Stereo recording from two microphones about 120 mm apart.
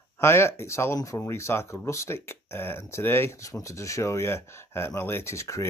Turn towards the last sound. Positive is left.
turn(degrees=25)  # may be behind; listen again after turning